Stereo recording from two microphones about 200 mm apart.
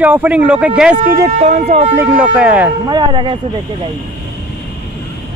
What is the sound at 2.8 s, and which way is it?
Speech, 20° right (ahead or behind).